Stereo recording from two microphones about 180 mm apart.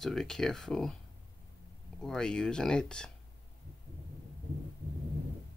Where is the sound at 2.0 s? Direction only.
5° left (ahead or behind).